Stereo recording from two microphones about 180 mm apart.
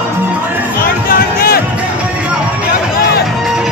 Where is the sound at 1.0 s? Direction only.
55° left (ahead or behind).